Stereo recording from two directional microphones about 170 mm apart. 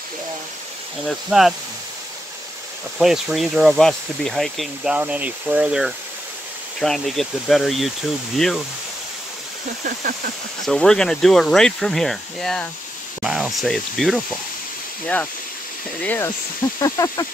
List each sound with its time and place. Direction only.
1.0 s speech: centre (ahead or behind)
3.0 s speech: 5° right (ahead or behind)
10.7 s speech: 5° left (ahead or behind)
16.0 s speech: 10° left (ahead or behind)